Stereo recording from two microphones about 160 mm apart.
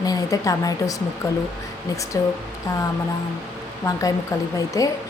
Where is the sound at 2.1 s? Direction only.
20° left (ahead or behind).